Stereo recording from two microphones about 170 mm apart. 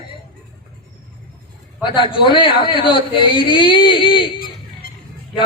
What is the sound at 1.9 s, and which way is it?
A man's voice, 30° left (ahead or behind).